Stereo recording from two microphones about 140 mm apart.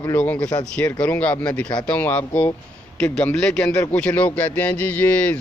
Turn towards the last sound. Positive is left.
turn(degrees=10)  # may be behind; listen again after turning